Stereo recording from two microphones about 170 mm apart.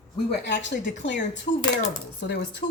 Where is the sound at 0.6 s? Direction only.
90° left.